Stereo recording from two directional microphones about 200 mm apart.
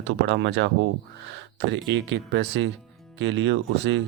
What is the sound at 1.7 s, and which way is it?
A man's voice, 65° right (ahead or behind).